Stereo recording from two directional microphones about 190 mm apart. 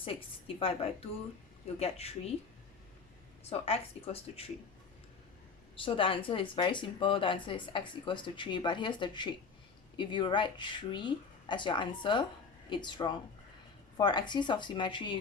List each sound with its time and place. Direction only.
0.0 s speech: 30° left (ahead or behind)
3.5 s speech: 30° left (ahead or behind)
5.7 s speech: 30° left (ahead or behind)